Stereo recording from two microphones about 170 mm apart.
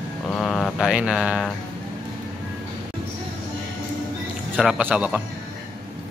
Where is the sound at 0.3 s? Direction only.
5° left (ahead or behind).